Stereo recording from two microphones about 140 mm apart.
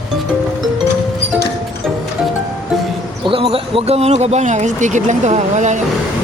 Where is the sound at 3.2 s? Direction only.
40° right (ahead or behind).